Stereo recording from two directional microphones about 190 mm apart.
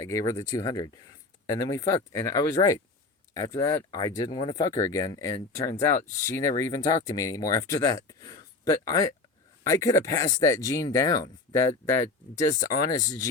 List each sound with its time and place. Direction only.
0.0 s speech: 15° left (ahead or behind)